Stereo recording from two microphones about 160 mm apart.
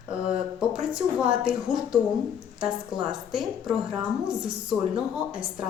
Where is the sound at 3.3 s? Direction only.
Centre (ahead or behind).